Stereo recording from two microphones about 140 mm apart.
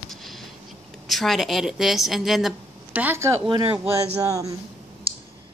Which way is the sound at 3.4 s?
35° right (ahead or behind).